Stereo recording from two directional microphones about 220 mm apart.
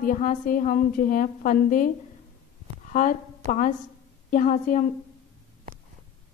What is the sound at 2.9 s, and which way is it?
A woman's voice, 35° left (ahead or behind).